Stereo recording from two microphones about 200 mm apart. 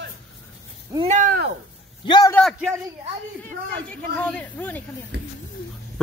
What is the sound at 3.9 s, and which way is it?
Speech, 5° left (ahead or behind).